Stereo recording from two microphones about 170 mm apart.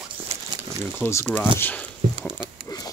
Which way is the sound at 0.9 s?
15° left (ahead or behind).